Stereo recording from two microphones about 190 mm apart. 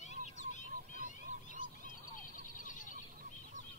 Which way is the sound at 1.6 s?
40° left (ahead or behind).